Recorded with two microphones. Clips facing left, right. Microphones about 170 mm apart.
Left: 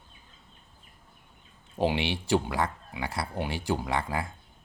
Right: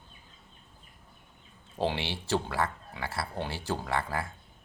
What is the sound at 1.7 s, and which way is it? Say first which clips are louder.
Speech: left 4 dB; 15° left (ahead or behind).